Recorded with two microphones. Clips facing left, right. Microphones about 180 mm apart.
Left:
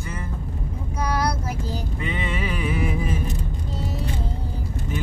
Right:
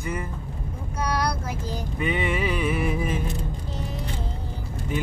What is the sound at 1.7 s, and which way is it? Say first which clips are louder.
Music: right 2 dB; 15° right (ahead or behind).